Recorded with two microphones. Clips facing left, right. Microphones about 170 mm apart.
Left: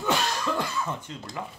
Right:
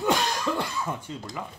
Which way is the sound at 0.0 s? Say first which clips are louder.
Right 2 dB; 15° right (ahead or behind).